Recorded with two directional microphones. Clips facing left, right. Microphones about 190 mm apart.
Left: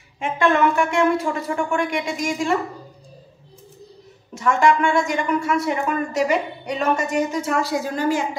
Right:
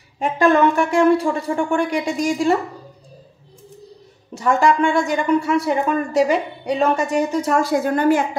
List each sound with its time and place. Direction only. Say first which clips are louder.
0.2 s a woman's voice: right 3 dB; 35° right (ahead or behind)
4.3 s a woman's voice: right 1 dB; 35° right (ahead or behind); by 8.2 s 55° right (ahead or behind)